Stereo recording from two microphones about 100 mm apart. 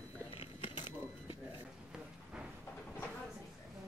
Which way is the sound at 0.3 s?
60° left (ahead or behind).